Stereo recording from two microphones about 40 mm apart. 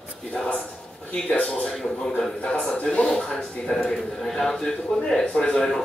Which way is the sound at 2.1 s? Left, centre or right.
Centre.